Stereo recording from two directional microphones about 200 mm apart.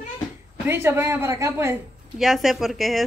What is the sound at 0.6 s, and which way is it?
Speech, 10° right (ahead or behind).